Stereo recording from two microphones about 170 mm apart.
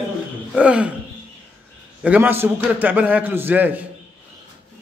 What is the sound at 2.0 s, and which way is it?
A man's voice, 10° right (ahead or behind).